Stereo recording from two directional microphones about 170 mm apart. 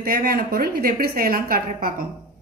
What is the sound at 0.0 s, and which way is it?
A woman's voice, 60° right (ahead or behind).